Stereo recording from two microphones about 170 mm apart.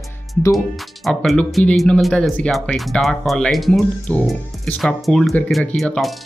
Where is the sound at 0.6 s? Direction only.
Centre (ahead or behind).